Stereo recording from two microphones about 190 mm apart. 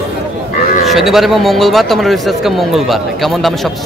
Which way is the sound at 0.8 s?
Centre (ahead or behind).